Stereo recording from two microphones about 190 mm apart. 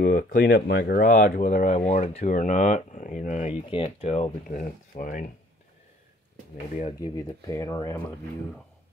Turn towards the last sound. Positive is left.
turn(degrees=15)  # may be behind; listen again after turning